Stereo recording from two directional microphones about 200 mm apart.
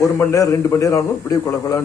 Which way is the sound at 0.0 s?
15° left (ahead or behind).